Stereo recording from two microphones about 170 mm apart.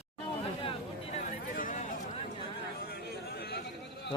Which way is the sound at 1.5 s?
50° left (ahead or behind).